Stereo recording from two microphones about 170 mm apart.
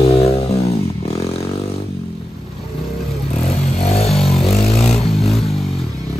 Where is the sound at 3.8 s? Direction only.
35° left (ahead or behind).